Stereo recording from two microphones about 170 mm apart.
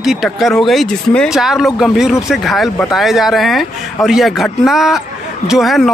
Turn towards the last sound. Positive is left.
turn(degrees=0)  # may be behind; listen again after turning